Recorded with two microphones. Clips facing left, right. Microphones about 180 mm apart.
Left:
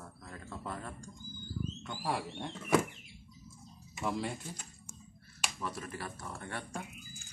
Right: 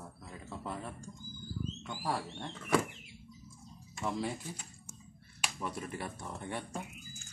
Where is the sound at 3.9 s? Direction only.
Centre (ahead or behind).